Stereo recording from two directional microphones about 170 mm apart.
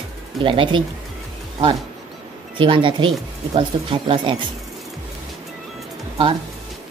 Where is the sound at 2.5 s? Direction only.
30° right (ahead or behind).